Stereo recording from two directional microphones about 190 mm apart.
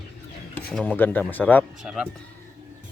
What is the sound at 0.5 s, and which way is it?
Speech, 5° left (ahead or behind).